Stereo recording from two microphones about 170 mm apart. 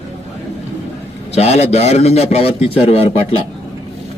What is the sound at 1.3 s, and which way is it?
A man's voice, 40° left (ahead or behind).